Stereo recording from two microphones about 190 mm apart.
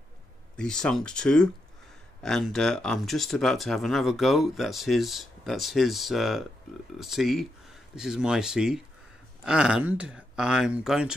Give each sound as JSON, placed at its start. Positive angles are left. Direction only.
{"t": 0.6, "sound": "speech", "side_deg": 5}